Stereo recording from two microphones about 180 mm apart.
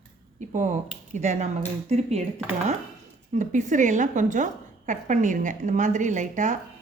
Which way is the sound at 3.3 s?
45° right (ahead or behind).